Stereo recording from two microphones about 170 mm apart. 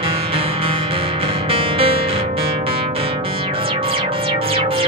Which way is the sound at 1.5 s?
35° right (ahead or behind).